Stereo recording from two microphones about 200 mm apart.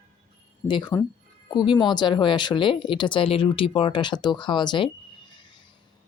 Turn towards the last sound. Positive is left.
turn(degrees=25)  # may be behind; listen again after turning